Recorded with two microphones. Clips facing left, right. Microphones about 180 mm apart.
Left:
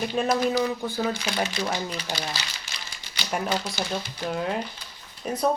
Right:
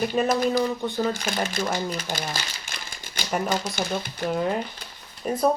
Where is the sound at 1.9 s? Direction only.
50° right (ahead or behind).